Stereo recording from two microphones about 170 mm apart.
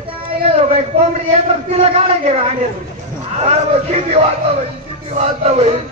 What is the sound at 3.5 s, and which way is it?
A man's voice, 40° right (ahead or behind).